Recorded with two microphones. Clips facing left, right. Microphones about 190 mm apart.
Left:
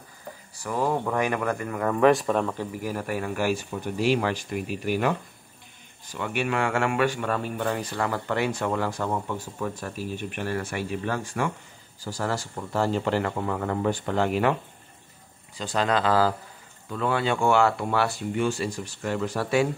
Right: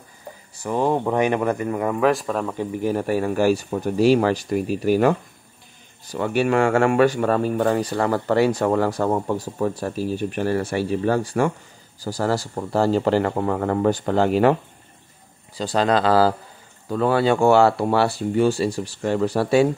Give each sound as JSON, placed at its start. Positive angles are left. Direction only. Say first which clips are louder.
{"t": 0.7, "sound": "speech", "louder": "right 5 dB", "side_deg": -25}
{"t": 2.0, "sound": "speech", "louder": "left 3 dB", "side_deg": 0}
{"t": 2.5, "sound": "speech", "louder": "right 7 dB", "side_deg": -15}
{"t": 2.9, "sound": "speech", "louder": "right 9 dB", "side_deg": -30}
{"t": 6.1, "sound": "speech", "louder": "right 8 dB", "side_deg": -35}